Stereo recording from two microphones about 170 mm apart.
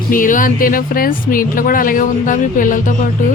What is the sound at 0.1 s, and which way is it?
Speech, 50° left (ahead or behind).